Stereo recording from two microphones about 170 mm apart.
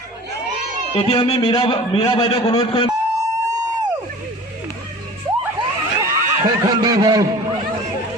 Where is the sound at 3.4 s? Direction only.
20° right (ahead or behind).